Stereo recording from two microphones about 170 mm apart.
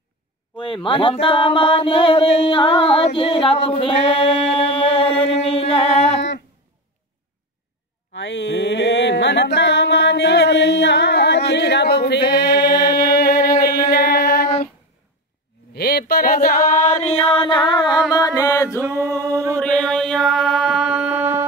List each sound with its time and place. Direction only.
0.6 s speech: 30° left (ahead or behind)
3.6 s a sound: 35° left (ahead or behind)
8.1 s music: 90° left; by 13.7 s 65° left (ahead or behind)
13.8 s female singing: 60° left (ahead or behind)
15.7 s a sound: 65° left (ahead or behind); by 17.1 s 45° left (ahead or behind)
17.3 s music: 30° left (ahead or behind)
18.8 s singing: 10° right (ahead or behind)
19.6 s mantra: 5° left (ahead or behind); by 21.5 s 10° right (ahead or behind)